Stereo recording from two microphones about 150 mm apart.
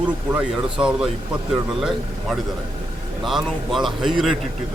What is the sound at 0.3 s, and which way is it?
Speech, 10° right (ahead or behind).